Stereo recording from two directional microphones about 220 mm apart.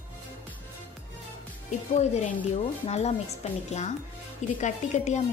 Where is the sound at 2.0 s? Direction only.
30° left (ahead or behind).